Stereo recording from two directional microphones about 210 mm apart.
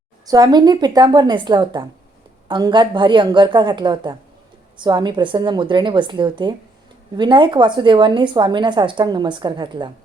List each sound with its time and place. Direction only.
0.3 s a woman's voice: 20° right (ahead or behind)